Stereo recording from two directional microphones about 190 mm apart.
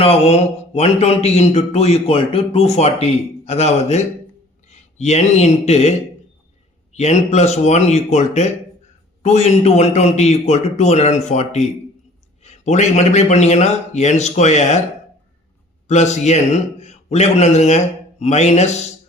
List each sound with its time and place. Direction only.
0.0 s speech: 30° left (ahead or behind)
6.9 s speech: 35° left (ahead or behind)
15.9 s a man's voice: 35° left (ahead or behind)